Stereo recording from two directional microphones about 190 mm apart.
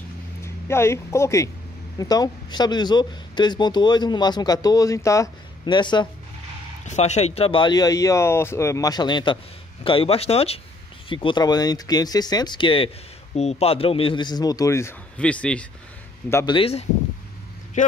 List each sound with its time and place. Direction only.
0.4 s speech: 15° left (ahead or behind)
6.9 s speech: 35° left (ahead or behind); by 16.5 s 15° left (ahead or behind)
16.5 s speech: 30° left (ahead or behind)
17.8 s speech: 40° left (ahead or behind)